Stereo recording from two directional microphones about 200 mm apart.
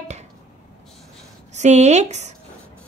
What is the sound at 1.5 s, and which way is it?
Speech, 35° right (ahead or behind).